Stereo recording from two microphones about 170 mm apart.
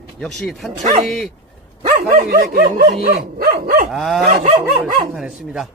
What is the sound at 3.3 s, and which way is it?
Dog, 60° right (ahead or behind).